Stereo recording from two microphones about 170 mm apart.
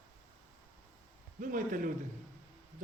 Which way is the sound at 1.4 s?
50° right (ahead or behind).